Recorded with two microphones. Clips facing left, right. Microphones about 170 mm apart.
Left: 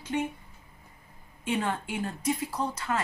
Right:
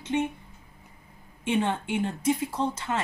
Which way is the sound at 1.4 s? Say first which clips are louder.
Right 3 dB; 25° right (ahead or behind).